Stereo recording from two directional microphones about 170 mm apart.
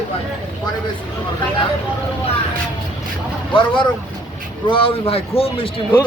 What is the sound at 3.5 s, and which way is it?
A man's voice, 30° left (ahead or behind).